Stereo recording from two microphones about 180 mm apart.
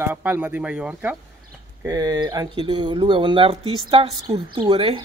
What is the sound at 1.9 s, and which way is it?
Speech, 20° right (ahead or behind).